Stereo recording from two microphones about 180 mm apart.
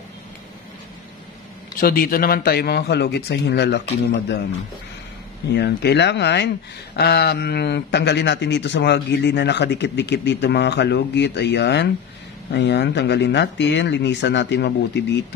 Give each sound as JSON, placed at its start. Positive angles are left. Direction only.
{"t": 1.8, "sound": "a man's voice", "side_deg": 55}
{"t": 5.5, "sound": "a man's voice", "side_deg": 70}